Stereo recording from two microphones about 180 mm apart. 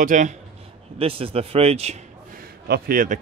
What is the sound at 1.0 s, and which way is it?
Speech, 30° right (ahead or behind).